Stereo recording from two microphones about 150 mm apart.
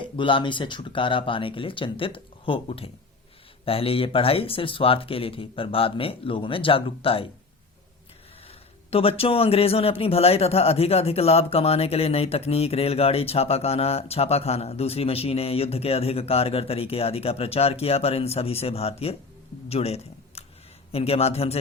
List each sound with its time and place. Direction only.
0.2 s a man's voice: 35° left (ahead or behind)
8.9 s a man's voice: 40° left (ahead or behind)